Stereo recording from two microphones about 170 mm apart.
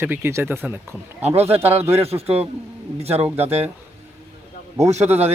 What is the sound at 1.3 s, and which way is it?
A man's voice, 35° right (ahead or behind).